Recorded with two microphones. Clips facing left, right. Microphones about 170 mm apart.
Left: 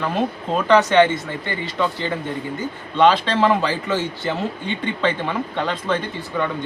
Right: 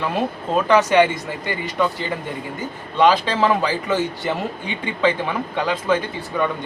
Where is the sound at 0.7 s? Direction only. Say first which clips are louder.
Left 1 dB; 10° right (ahead or behind).